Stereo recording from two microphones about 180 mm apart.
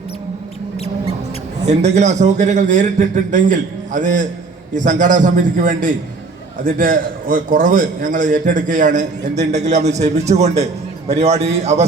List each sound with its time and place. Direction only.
1.6 s a man's voice: 40° right (ahead or behind)